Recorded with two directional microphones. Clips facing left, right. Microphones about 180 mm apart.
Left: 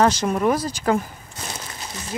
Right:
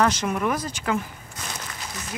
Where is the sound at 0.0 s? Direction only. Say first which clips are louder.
Left 4 dB; 35° left (ahead or behind).